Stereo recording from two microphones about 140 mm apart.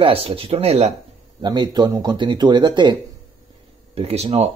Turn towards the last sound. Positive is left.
turn(degrees=-50)  # may be behind; listen again after turning